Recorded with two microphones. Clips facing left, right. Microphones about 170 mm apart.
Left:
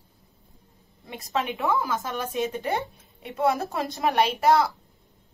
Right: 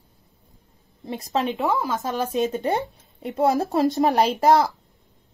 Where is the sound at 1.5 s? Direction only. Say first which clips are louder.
Right 2 dB; 20° right (ahead or behind).